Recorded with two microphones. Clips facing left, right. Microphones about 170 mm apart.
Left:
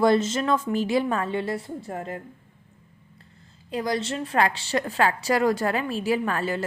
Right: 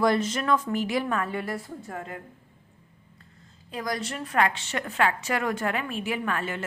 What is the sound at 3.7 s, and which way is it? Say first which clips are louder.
A woman's voice: left 5 dB; 30° left (ahead or behind).